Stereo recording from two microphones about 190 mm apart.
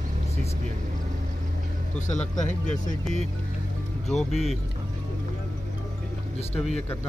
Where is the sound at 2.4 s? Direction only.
40° left (ahead or behind).